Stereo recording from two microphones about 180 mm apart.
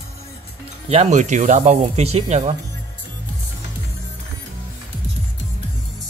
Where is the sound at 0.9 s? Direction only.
40° right (ahead or behind).